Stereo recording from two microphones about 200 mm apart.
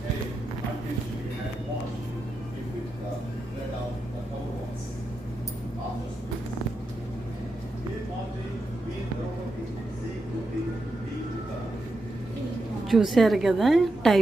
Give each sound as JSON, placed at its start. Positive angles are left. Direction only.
{"t": 12.9, "sound": "a woman's voice", "side_deg": 0}